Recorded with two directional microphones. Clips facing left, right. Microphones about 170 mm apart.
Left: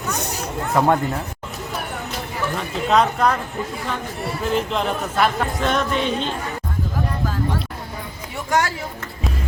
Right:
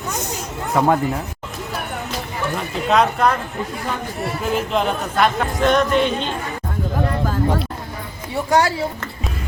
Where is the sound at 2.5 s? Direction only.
Centre (ahead or behind).